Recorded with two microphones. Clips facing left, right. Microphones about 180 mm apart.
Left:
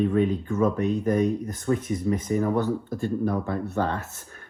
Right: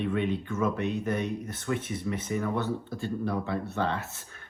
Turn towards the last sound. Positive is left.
turn(degrees=40)  # may be behind; listen again after turning